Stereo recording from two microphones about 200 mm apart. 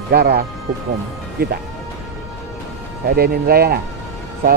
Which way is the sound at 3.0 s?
50° right (ahead or behind).